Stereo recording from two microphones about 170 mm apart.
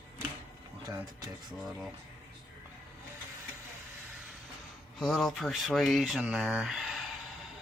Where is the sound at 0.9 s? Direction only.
25° right (ahead or behind).